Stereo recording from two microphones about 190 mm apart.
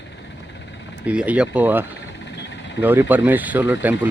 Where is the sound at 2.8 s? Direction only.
10° right (ahead or behind).